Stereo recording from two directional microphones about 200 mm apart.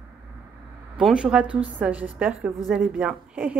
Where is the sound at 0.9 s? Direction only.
5° right (ahead or behind).